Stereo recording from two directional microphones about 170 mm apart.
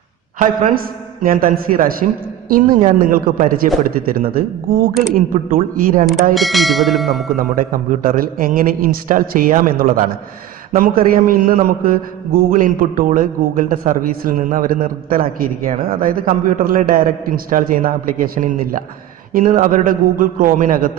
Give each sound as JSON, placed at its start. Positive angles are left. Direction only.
{"t": 0.4, "sound": "a man's voice", "side_deg": -55}
{"t": 6.3, "sound": "bell", "side_deg": 0}
{"t": 7.3, "sound": "a man's voice", "side_deg": -55}